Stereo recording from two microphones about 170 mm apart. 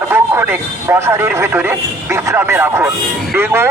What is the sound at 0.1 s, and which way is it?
Speech, 15° right (ahead or behind).